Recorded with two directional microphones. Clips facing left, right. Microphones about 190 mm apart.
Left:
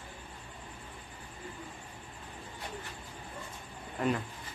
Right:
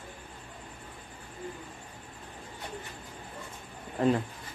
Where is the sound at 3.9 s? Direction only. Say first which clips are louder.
Right 5 dB; 30° right (ahead or behind).